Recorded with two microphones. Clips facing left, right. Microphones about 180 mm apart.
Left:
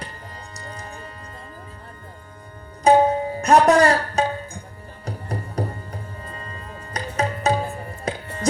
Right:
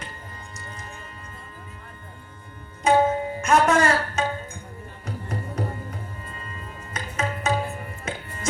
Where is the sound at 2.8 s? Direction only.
35° left (ahead or behind).